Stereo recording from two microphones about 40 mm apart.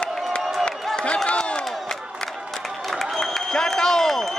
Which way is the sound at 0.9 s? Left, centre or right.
Left.